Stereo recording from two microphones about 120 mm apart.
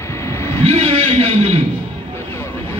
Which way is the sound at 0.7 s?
55° right (ahead or behind).